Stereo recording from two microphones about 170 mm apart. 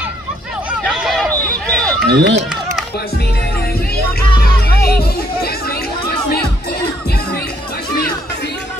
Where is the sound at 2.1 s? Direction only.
85° right.